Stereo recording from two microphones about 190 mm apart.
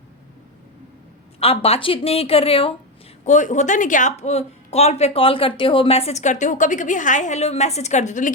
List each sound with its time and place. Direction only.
1.4 s speech: 30° left (ahead or behind)
3.2 s speech: 40° left (ahead or behind)